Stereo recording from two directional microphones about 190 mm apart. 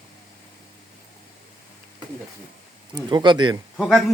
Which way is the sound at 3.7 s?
5° left (ahead or behind).